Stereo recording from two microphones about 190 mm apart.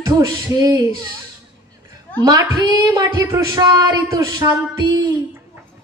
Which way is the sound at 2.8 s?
20° right (ahead or behind).